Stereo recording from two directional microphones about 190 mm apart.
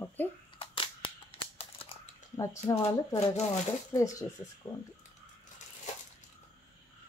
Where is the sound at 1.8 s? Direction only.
30° left (ahead or behind).